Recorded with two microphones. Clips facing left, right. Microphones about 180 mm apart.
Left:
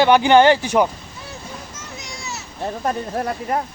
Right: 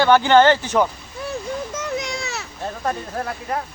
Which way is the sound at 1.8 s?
60° right (ahead or behind).